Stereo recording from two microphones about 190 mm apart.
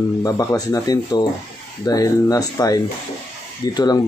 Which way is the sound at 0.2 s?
15° left (ahead or behind).